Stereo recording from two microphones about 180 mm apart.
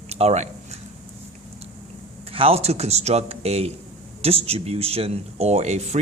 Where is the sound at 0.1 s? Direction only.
35° right (ahead or behind).